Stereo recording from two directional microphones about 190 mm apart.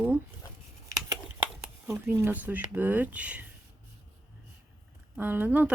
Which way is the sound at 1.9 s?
10° right (ahead or behind).